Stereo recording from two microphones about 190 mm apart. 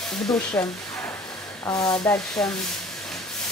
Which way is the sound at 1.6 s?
20° left (ahead or behind).